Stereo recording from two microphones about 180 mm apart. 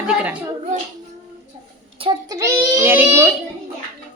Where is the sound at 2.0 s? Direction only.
25° right (ahead or behind).